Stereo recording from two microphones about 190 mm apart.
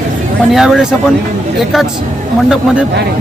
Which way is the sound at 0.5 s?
Centre (ahead or behind).